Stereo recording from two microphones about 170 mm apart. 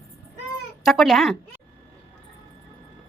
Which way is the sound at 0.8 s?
Centre (ahead or behind).